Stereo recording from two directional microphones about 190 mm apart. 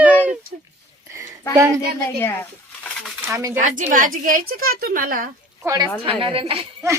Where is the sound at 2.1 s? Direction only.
10° left (ahead or behind).